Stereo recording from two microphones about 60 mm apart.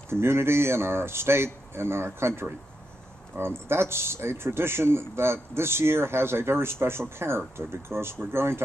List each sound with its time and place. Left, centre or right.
0.1 s speech: right